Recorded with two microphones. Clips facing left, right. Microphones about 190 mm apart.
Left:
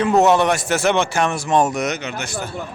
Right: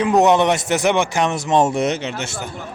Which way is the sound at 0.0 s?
15° right (ahead or behind).